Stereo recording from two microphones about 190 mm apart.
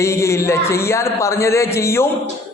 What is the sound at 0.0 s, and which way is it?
Speech, 15° left (ahead or behind).